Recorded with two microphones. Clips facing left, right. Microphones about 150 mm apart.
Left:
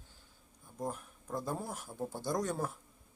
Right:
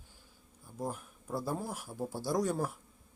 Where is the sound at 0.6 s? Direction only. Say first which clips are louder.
Right 1 dB; 5° right (ahead or behind).